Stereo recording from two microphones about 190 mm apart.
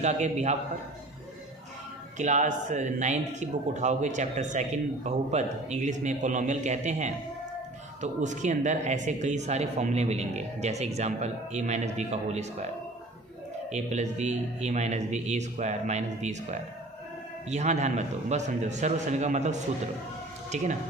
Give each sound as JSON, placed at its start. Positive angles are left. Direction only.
{"t": 0.0, "sound": "a man's voice", "side_deg": -40}
{"t": 2.1, "sound": "a man's voice", "side_deg": -40}
{"t": 13.7, "sound": "a man's voice", "side_deg": -35}